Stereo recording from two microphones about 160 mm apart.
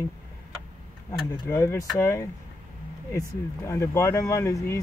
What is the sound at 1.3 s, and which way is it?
Speech, 20° left (ahead or behind).